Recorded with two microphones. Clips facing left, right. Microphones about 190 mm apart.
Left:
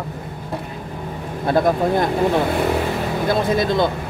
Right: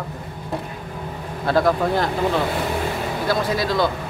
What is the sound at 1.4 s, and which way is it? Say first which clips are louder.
Speech: left 1 dB; 20° left (ahead or behind).